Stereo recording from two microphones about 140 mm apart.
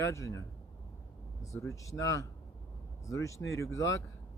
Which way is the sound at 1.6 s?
25° left (ahead or behind).